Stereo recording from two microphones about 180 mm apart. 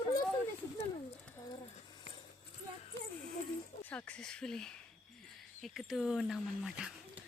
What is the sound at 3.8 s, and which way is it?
Speech, 5° left (ahead or behind).